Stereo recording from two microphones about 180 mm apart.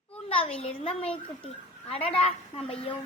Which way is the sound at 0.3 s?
30° left (ahead or behind).